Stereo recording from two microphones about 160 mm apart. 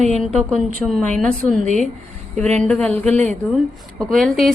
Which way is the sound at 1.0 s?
50° right (ahead or behind).